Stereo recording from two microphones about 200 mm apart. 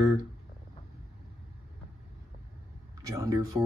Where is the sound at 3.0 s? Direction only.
15° right (ahead or behind).